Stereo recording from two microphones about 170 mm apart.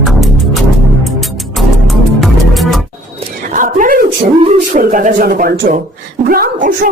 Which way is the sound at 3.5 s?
50° right (ahead or behind).